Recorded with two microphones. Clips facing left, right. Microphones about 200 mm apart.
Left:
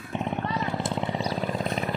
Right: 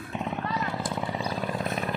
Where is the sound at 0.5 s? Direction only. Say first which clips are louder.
Left 2 dB; 25° left (ahead or behind).